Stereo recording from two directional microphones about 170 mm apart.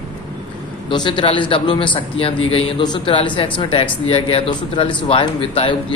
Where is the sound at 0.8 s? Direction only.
30° left (ahead or behind).